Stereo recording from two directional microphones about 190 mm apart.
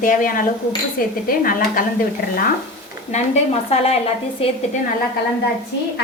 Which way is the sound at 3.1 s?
35° left (ahead or behind).